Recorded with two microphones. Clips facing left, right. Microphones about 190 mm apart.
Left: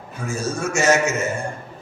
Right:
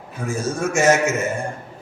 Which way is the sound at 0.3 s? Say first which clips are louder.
Right 2 dB; 55° right (ahead or behind).